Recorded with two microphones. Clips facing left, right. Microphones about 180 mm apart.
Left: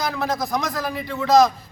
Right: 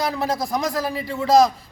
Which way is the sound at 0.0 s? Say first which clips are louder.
Right 1 dB; 30° right (ahead or behind).